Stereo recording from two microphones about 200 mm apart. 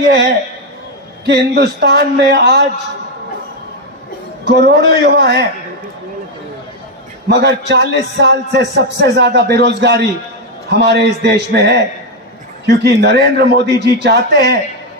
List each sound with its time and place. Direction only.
1.2 s a man's voice: 60° right (ahead or behind)
4.6 s a man's voice: 55° right (ahead or behind)
7.2 s a man's voice: 60° right (ahead or behind)